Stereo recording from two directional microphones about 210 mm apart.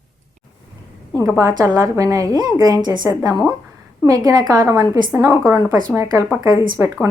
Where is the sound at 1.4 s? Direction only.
15° right (ahead or behind).